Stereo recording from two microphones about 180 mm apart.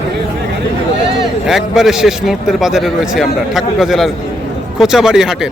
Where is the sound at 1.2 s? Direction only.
Centre (ahead or behind).